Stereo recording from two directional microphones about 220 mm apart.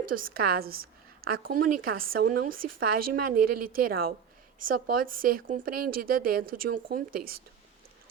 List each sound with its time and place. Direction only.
0.1 s a woman's voice: 40° right (ahead or behind)